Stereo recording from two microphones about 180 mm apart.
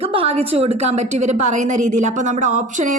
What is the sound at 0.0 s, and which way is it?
A woman's voice, 30° right (ahead or behind).